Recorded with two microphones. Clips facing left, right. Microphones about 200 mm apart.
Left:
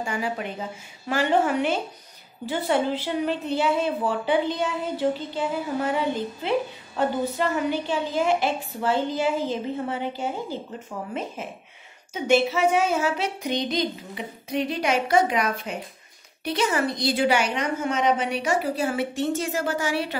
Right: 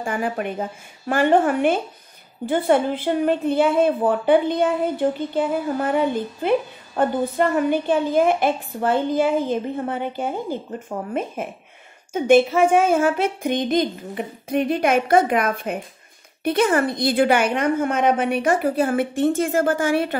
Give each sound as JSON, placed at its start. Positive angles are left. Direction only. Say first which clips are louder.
{"t": 0.0, "sound": "a woman's voice", "louder": "right 4 dB", "side_deg": -50}